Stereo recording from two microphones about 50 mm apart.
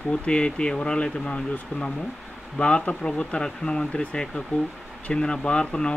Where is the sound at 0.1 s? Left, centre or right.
Left.